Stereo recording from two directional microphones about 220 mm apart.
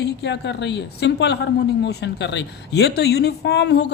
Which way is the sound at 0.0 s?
50° left (ahead or behind).